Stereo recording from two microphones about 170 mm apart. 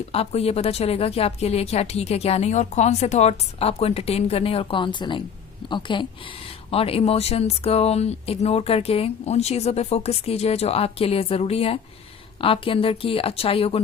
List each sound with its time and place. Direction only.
0.1 s speech: 35° left (ahead or behind)